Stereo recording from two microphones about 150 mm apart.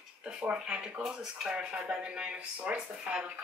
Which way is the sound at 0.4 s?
10° right (ahead or behind).